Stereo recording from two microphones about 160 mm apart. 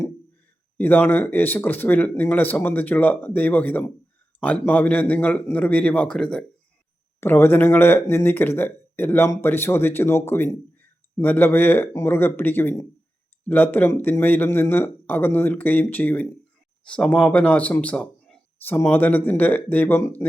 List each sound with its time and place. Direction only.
0.8 s speech: 10° left (ahead or behind)